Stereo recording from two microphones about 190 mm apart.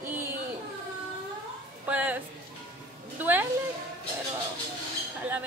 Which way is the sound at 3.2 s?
10° right (ahead or behind).